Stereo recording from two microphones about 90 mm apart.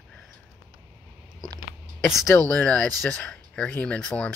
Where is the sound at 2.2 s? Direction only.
35° left (ahead or behind).